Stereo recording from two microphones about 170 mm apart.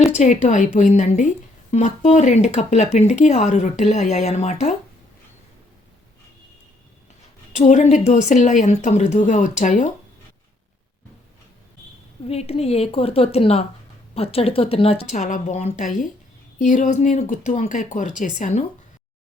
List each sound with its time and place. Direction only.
0.4 s speech: 45° left (ahead or behind)
7.5 s speech: 40° left (ahead or behind)
12.3 s speech: 35° left (ahead or behind)
15.2 s speech: 50° left (ahead or behind)